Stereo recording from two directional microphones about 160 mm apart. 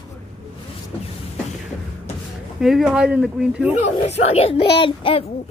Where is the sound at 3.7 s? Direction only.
45° left (ahead or behind).